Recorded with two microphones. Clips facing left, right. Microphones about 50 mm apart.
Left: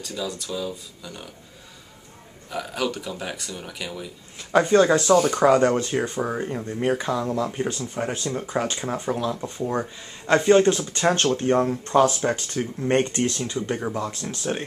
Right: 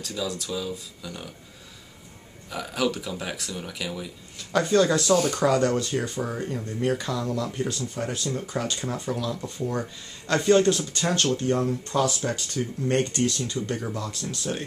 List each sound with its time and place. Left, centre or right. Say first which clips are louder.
0.0 s speech: even; centre
2.5 s speech: even; centre
4.4 s speech: left 4 dB; left